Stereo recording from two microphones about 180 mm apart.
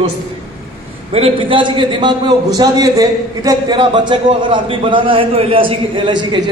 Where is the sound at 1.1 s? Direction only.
30° right (ahead or behind).